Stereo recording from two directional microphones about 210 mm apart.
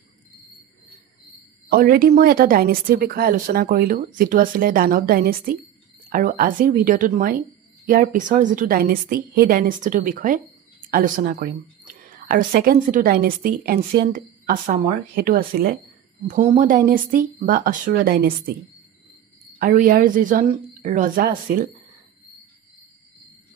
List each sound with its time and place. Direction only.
1.7 s a woman's voice: 45° right (ahead or behind)
19.6 s a woman's voice: 40° right (ahead or behind)